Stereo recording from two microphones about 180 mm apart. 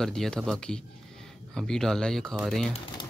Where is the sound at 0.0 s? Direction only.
5° left (ahead or behind).